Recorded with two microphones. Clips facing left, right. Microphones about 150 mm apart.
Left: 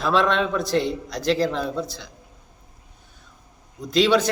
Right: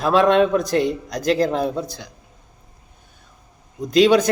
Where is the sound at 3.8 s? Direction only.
45° right (ahead or behind).